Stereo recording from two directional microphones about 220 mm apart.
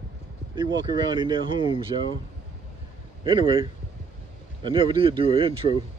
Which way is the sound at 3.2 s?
20° right (ahead or behind).